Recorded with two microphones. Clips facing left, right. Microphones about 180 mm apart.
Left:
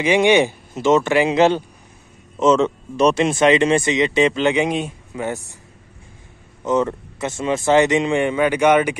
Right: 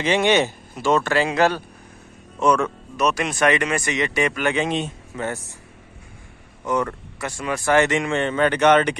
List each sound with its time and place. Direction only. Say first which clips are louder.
0.0 s speech: left 4 dB; 15° left (ahead or behind)
6.6 s speech: left 4 dB; 20° left (ahead or behind)